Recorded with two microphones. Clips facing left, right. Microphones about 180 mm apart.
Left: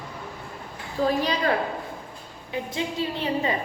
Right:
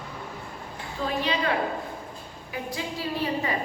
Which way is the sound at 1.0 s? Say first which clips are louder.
Left 4 dB; 40° left (ahead or behind).